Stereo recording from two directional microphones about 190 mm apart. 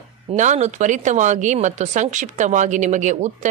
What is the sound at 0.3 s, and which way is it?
Speech, 35° right (ahead or behind).